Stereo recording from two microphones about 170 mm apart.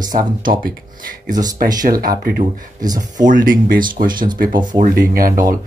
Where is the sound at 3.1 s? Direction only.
50° right (ahead or behind).